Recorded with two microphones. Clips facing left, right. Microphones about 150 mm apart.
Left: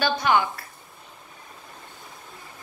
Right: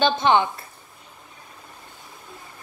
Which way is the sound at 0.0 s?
25° right (ahead or behind).